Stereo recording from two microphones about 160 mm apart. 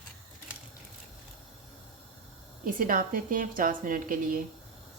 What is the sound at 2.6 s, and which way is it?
A woman's voice, 60° right (ahead or behind).